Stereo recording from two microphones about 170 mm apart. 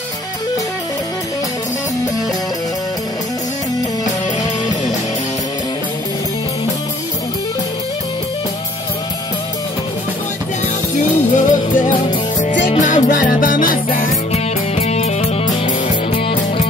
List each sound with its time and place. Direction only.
11.0 s music: 50° left (ahead or behind)
14.3 s music: 40° left (ahead or behind)